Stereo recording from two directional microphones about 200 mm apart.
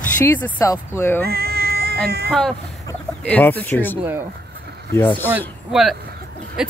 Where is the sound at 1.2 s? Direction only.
50° right (ahead or behind).